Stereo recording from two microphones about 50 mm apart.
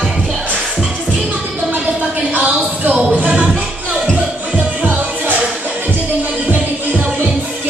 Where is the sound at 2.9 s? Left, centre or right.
Right.